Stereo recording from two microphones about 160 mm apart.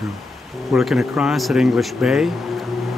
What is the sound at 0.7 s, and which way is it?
Speech, centre (ahead or behind).